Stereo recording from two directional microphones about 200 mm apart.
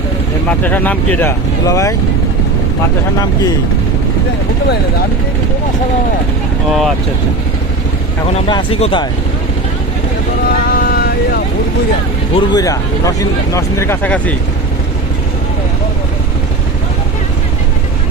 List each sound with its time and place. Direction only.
0.6 s speech: 10° left (ahead or behind)
6.7 s speech: centre (ahead or behind)
8.3 s speech: 25° left (ahead or behind)
10.7 s vehicle: 50° left (ahead or behind)
12.3 s speech: 20° left (ahead or behind)